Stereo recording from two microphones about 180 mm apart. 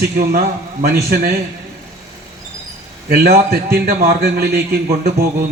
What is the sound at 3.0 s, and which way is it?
A man's voice, 60° right (ahead or behind).